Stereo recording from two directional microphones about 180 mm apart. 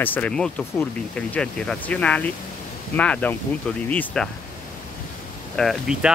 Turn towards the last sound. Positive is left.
turn(degrees=0)  # may be behind; listen again after turning